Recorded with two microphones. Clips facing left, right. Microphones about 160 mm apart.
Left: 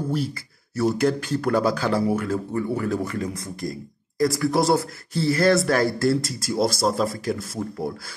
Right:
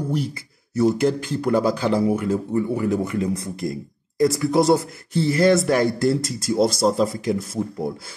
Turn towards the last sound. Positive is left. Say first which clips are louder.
# right 3 dB
turn(degrees=-20)  # may be behind; listen again after turning